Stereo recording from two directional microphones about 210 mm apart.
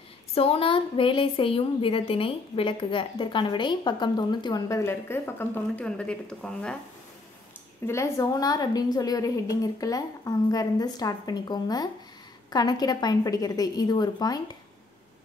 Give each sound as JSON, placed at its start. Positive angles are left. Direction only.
{"t": 0.3, "sound": "a woman's voice", "side_deg": 30}
{"t": 7.8, "sound": "a woman's voice", "side_deg": 15}